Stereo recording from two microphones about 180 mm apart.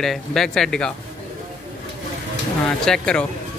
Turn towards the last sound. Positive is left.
turn(degrees=5)  # may be behind; listen again after turning